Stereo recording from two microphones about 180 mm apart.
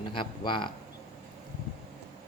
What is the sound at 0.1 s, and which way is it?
Speech, 25° left (ahead or behind).